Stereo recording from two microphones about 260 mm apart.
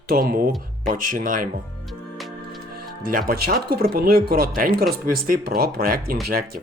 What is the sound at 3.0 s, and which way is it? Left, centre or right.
Speech, right.